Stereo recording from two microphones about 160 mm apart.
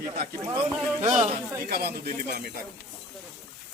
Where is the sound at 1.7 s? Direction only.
80° right.